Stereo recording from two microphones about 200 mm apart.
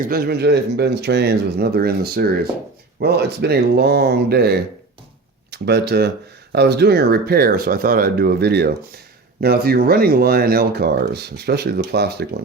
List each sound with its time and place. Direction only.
0.0 s speech: 50° right (ahead or behind)